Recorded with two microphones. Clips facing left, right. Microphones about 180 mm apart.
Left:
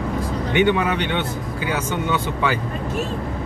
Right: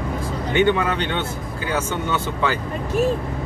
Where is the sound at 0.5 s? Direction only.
15° left (ahead or behind).